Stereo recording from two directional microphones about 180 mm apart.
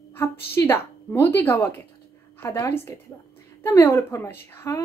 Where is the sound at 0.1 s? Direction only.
15° left (ahead or behind).